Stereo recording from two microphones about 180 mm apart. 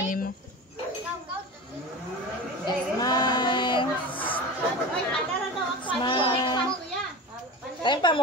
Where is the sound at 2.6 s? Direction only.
20° left (ahead or behind).